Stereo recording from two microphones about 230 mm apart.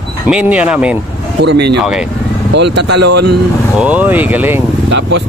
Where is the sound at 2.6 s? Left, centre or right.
Right.